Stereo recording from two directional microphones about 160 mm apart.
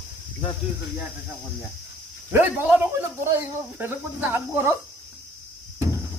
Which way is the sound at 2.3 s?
10° right (ahead or behind).